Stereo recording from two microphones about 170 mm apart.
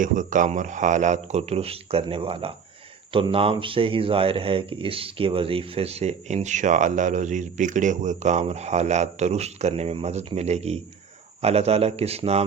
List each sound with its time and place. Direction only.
0.0 s speech: 50° right (ahead or behind)